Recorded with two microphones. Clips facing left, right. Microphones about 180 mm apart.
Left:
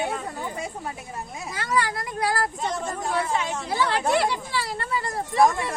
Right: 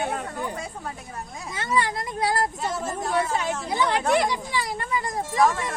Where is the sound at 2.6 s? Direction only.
5° right (ahead or behind).